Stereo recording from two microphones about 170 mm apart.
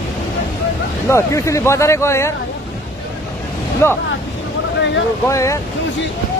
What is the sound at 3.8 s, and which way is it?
Speech, 15° left (ahead or behind).